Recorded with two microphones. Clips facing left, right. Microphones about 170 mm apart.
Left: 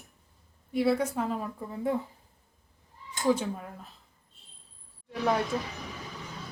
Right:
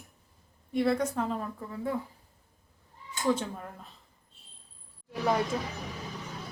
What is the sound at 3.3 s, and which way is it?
Speech, 5° left (ahead or behind).